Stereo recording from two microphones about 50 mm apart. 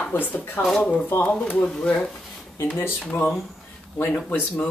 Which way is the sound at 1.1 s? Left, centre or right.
Left.